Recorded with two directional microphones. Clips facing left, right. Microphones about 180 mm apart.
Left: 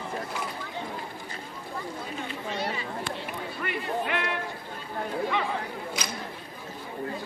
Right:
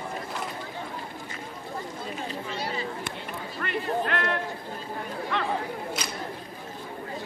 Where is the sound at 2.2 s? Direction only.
30° right (ahead or behind).